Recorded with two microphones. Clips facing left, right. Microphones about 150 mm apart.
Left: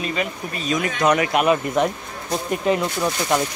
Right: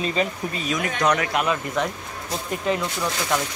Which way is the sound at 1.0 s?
10° left (ahead or behind).